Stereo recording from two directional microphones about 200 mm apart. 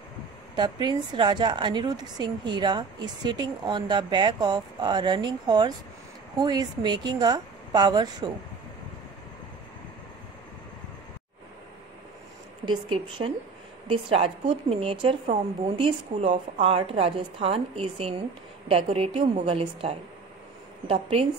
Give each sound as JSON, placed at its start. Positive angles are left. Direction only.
{"t": 0.6, "sound": "a woman's voice", "side_deg": -20}
{"t": 12.6, "sound": "a woman's voice", "side_deg": -25}